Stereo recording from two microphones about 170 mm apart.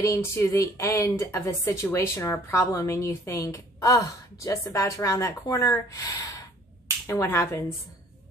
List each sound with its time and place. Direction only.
0.0 s a woman's voice: 15° left (ahead or behind)